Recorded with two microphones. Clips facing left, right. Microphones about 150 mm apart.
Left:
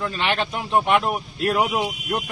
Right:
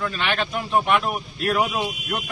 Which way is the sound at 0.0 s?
25° left (ahead or behind).